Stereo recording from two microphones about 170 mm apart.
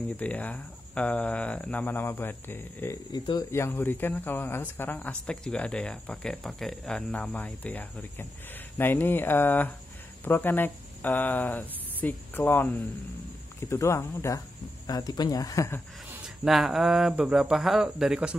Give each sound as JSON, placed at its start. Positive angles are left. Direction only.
{"t": 0.2, "sound": "speech", "side_deg": 10}
{"t": 3.1, "sound": "speech", "side_deg": 25}
{"t": 16.4, "sound": "speech", "side_deg": 0}